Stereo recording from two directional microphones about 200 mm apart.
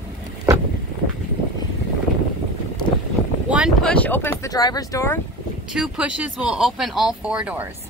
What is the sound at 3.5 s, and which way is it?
Speech, centre (ahead or behind).